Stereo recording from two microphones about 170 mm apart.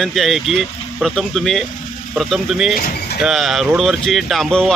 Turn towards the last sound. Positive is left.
turn(degrees=5)  # may be behind; listen again after turning